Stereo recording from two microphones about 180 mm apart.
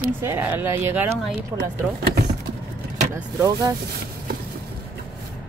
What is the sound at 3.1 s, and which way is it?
Speech, 15° right (ahead or behind).